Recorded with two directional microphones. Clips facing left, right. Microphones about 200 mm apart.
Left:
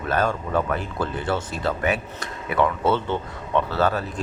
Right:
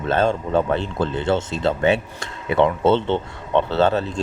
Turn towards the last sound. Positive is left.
turn(degrees=-25)  # may be behind; listen again after turning